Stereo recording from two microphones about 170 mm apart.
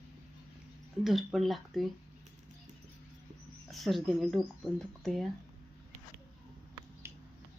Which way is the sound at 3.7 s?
Centre (ahead or behind).